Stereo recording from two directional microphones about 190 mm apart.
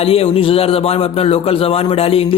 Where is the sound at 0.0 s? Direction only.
30° left (ahead or behind).